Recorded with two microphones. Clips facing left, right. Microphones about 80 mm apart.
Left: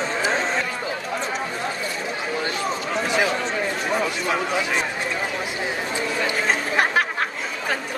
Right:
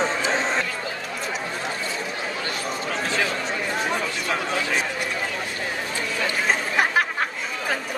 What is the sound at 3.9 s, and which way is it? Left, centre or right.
Chatter, centre.